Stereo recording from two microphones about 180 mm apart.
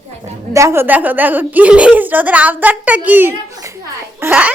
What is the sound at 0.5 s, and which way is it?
A woman's voice, 15° right (ahead or behind).